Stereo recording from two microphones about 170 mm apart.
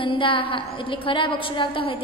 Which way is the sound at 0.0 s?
30° left (ahead or behind).